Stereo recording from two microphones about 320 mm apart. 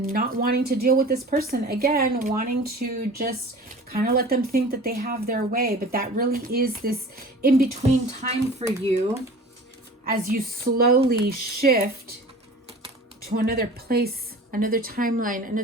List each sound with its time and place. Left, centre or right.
0.1 s a woman's voice: right
10.0 s a woman's voice: right
13.2 s a woman's voice: right